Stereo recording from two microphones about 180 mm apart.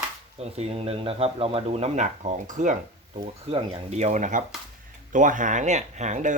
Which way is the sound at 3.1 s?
35° right (ahead or behind).